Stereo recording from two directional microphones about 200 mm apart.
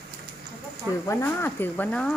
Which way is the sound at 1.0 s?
10° left (ahead or behind).